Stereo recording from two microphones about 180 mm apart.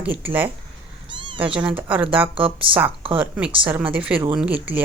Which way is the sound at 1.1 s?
25° right (ahead or behind).